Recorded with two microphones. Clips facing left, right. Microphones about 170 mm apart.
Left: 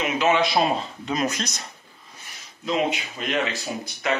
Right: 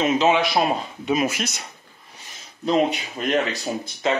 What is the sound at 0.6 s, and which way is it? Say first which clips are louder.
Speech: right 1 dB; 10° right (ahead or behind).